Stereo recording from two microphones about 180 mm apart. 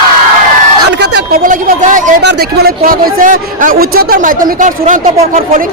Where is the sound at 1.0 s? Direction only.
50° right (ahead or behind).